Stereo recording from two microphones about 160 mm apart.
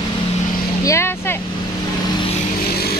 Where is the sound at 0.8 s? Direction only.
15° left (ahead or behind).